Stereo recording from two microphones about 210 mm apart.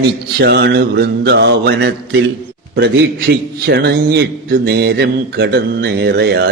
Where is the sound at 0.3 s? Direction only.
50° right (ahead or behind).